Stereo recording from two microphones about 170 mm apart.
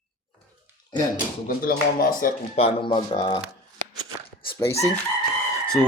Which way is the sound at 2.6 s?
35° left (ahead or behind).